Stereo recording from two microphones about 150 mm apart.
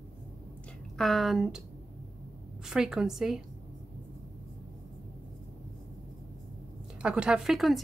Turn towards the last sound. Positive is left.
turn(degrees=0)  # may be behind; listen again after turning